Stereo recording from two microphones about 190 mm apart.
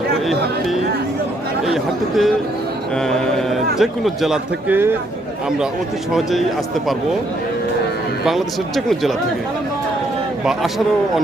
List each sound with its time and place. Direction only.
1.6 s speech: centre (ahead or behind)
8.2 s speech: centre (ahead or behind)